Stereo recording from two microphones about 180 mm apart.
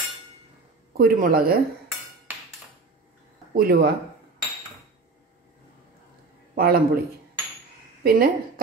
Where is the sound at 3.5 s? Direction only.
55° right (ahead or behind).